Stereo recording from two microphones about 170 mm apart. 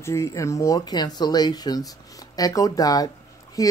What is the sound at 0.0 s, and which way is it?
Speech, 15° left (ahead or behind).